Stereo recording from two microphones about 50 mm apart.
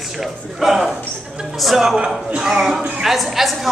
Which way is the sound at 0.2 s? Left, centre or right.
Centre.